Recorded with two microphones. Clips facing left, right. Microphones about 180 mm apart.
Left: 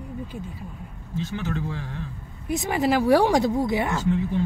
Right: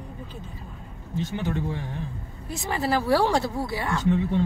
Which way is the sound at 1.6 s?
20° right (ahead or behind).